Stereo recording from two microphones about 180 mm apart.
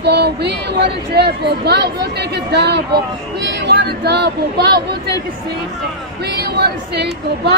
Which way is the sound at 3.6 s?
70° right (ahead or behind).